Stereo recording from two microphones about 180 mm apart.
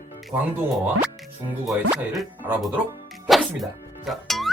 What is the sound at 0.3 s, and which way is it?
Speech, 20° right (ahead or behind).